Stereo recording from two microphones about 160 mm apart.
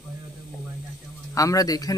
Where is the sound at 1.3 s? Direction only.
20° left (ahead or behind).